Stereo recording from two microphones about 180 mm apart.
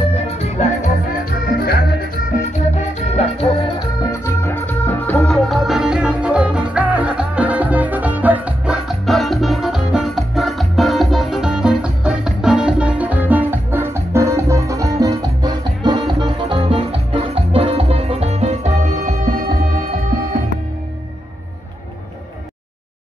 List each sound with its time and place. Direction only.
0.1 s music: 40° left (ahead or behind)
1.6 s music: 60° left (ahead or behind)
2.7 s music: 35° left (ahead or behind); by 19.3 s 40° right (ahead or behind)
19.4 s music: 55° right (ahead or behind)